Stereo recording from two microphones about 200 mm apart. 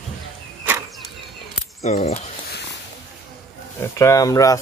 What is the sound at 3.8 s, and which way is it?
Speech, 15° left (ahead or behind).